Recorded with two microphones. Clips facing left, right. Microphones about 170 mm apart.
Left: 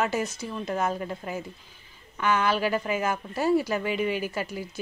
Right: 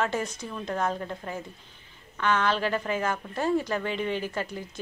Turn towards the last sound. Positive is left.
turn(degrees=5)  # may be behind; listen again after turning